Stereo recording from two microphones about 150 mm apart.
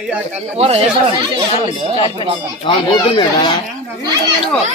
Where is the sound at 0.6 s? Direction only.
40° right (ahead or behind).